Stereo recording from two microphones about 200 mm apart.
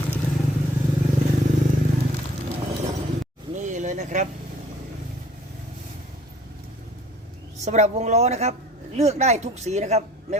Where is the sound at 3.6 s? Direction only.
35° right (ahead or behind).